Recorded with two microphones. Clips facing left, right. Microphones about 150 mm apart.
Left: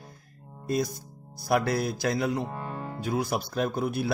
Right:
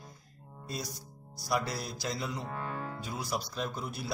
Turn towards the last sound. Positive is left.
turn(degrees=60)  # may be behind; listen again after turning